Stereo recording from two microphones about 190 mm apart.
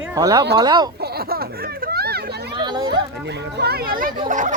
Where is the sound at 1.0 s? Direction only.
55° right (ahead or behind).